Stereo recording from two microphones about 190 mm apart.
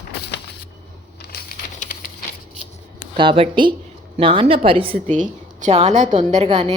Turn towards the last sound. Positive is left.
turn(degrees=-35)  # may be behind; listen again after turning